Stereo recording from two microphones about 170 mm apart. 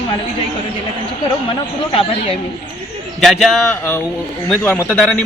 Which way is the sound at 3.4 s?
Centre (ahead or behind).